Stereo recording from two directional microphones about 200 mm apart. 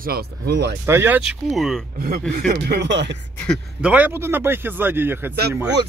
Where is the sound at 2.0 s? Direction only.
45° right (ahead or behind).